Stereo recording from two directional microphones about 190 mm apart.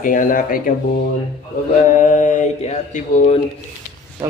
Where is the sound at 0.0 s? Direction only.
45° left (ahead or behind).